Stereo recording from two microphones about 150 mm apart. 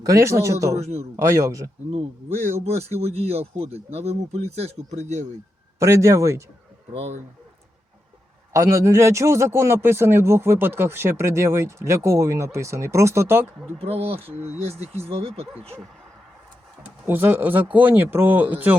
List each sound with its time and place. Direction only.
0.0 s speech: 20° right (ahead or behind)
0.8 s speech: 45° right (ahead or behind)
1.1 s speech: 20° right (ahead or behind)
1.9 s speech: 35° right (ahead or behind)
5.8 s speech: 20° right (ahead or behind)
6.9 s speech: 45° right (ahead or behind)
8.5 s speech: 20° right (ahead or behind)
13.7 s speech: 40° right (ahead or behind)
17.1 s speech: 15° right (ahead or behind)